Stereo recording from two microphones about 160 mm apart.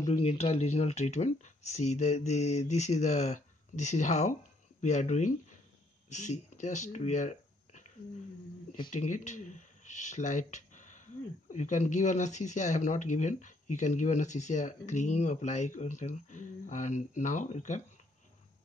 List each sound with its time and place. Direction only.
0.1 s speech: 40° left (ahead or behind)
8.9 s speech: 50° left (ahead or behind)